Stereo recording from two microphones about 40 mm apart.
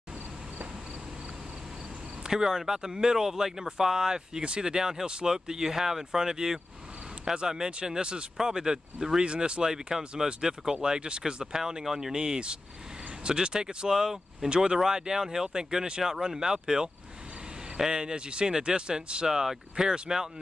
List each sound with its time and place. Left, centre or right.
2.2 s speech: centre
9.2 s speech: right; by 12.2 s centre
12.2 s speech: right
19.2 s speech: centre